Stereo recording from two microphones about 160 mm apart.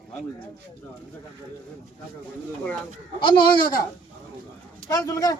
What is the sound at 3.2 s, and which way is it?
Speech, 30° left (ahead or behind).